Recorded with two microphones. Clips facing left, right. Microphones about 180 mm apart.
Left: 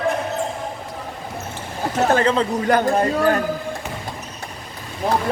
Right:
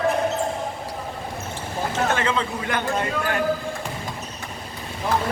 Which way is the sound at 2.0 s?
35° left (ahead or behind).